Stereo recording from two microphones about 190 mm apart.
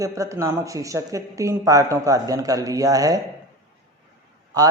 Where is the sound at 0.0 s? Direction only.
15° right (ahead or behind).